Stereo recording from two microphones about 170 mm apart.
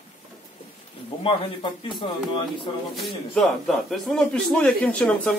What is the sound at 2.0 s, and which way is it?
Speech, 30° left (ahead or behind).